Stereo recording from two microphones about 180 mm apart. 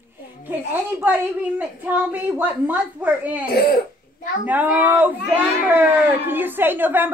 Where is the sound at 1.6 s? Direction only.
10° right (ahead or behind).